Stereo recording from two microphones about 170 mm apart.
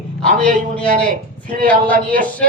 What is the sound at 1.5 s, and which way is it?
Speech, 55° right (ahead or behind).